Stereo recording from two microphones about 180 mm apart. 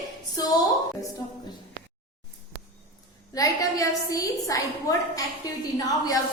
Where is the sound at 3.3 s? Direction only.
20° left (ahead or behind).